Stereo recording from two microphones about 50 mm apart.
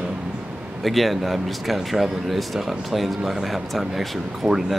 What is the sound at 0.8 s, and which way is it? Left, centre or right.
Speech, centre.